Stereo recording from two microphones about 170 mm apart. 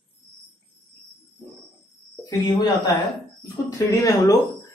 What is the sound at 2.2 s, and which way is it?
Speech, 20° left (ahead or behind).